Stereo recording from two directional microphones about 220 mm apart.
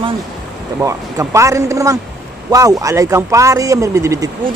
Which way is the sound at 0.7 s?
15° right (ahead or behind).